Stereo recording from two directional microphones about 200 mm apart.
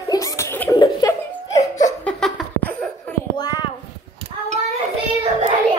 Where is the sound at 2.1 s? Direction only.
Centre (ahead or behind).